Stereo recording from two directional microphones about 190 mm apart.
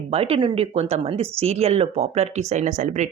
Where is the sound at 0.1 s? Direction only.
30° right (ahead or behind).